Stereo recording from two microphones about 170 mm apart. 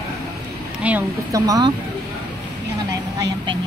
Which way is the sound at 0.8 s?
15° right (ahead or behind).